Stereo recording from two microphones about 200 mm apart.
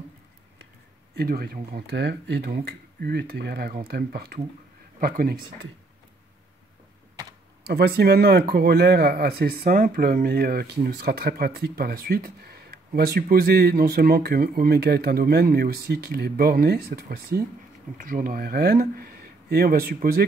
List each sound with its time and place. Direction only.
1.1 s speech: 50° right (ahead or behind)
7.6 s speech: 55° right (ahead or behind)